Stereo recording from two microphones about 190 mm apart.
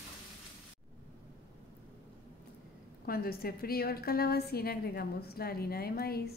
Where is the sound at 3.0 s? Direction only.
50° left (ahead or behind).